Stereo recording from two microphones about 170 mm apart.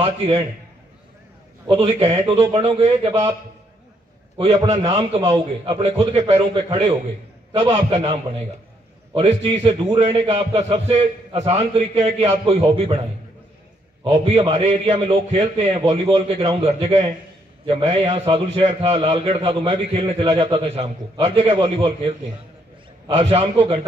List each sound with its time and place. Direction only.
0.0 s a man's voice: 35° right (ahead or behind)
1.7 s a man's voice: 35° right (ahead or behind)
4.9 s a man's voice: 35° right (ahead or behind)
7.7 s a man's voice: 35° right (ahead or behind)
14.0 s a man's voice: 35° right (ahead or behind)